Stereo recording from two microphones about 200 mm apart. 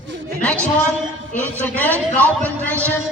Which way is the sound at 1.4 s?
10° left (ahead or behind).